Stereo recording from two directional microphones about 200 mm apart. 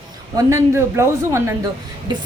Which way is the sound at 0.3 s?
15° right (ahead or behind).